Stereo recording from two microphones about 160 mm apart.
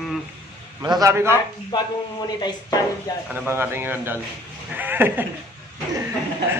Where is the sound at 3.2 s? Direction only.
10° right (ahead or behind).